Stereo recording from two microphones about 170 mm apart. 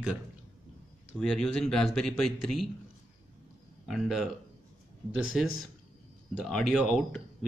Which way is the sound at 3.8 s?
Centre (ahead or behind).